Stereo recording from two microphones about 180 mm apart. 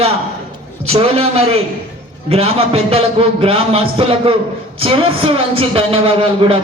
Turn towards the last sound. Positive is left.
turn(degrees=-30)  # may be behind; listen again after turning